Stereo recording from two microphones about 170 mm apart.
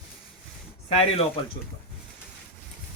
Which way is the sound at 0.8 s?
35° left (ahead or behind).